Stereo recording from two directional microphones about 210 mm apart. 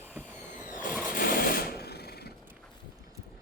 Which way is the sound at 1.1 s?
45° left (ahead or behind).